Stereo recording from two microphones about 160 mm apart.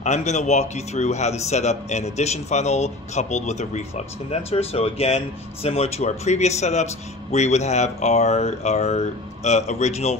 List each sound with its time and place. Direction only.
0.0 s a man's voice: 45° left (ahead or behind)